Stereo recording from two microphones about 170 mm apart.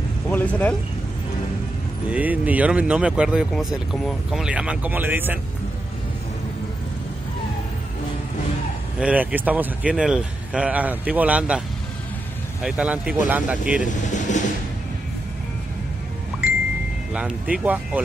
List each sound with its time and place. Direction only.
0.3 s speech: 10° left (ahead or behind)
2.0 s speech: 10° right (ahead or behind)
9.0 s speech: 10° right (ahead or behind)
12.6 s speech: 5° right (ahead or behind)
13.8 s vehicle: 45° left (ahead or behind)
17.1 s speech: 5° right (ahead or behind)